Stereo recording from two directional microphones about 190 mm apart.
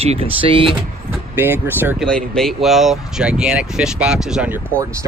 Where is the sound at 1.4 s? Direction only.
10° right (ahead or behind).